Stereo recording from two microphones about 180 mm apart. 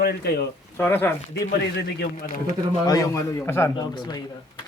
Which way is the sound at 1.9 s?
55° left (ahead or behind).